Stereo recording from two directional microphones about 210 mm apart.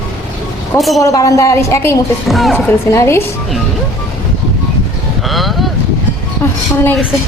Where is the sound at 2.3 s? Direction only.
Centre (ahead or behind).